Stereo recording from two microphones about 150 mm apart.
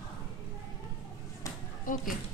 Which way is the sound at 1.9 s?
65° left (ahead or behind).